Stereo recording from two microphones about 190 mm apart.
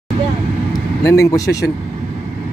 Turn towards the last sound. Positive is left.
turn(degrees=15)  # may be behind; listen again after turning